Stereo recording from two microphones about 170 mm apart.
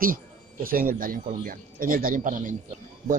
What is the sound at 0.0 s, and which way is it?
Speech, 55° right (ahead or behind).